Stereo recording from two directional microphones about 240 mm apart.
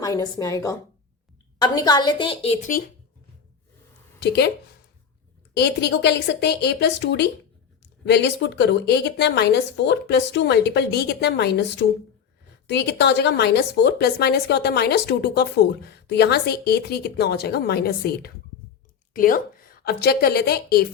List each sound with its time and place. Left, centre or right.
0.0 s a woman's voice: centre; by 2.8 s left
4.2 s speech: left
5.5 s a woman's voice: left